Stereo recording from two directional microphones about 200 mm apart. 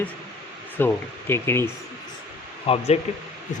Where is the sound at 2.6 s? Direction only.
30° left (ahead or behind).